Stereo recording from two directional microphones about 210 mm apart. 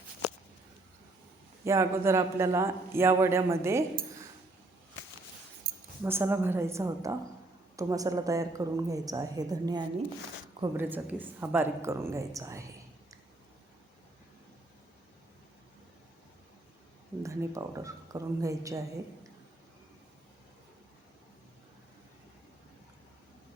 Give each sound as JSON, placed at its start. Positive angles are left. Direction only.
{"t": 1.6, "sound": "a man's voice", "side_deg": -15}
{"t": 5.7, "sound": "a sound", "side_deg": -45}
{"t": 6.0, "sound": "a man's voice", "side_deg": -10}
{"t": 17.2, "sound": "a man's voice", "side_deg": -15}